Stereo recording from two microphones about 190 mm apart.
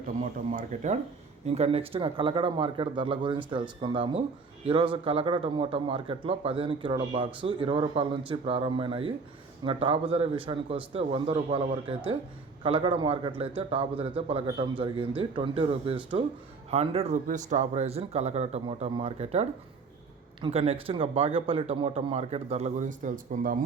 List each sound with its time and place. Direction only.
0.5 s a man's voice: 40° right (ahead or behind)